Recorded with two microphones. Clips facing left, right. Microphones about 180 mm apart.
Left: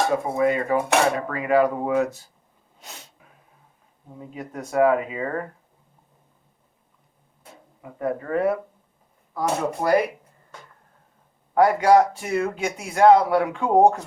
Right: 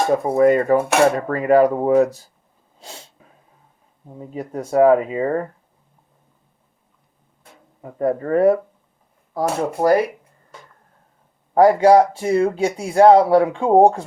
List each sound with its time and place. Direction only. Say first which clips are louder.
0.3 s speech: right 8 dB; 45° right (ahead or behind)
2.8 s sneeze: right 5 dB; 30° right (ahead or behind)
4.2 s speech: right 6 dB; 35° right (ahead or behind)
7.8 s speech: right 6 dB; 40° right (ahead or behind)
11.5 s speech: right 4 dB; 30° right (ahead or behind)